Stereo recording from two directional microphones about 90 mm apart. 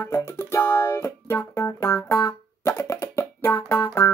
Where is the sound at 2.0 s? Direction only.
45° left (ahead or behind).